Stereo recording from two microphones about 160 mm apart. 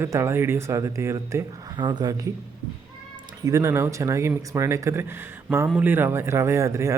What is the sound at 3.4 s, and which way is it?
Speech, 20° right (ahead or behind).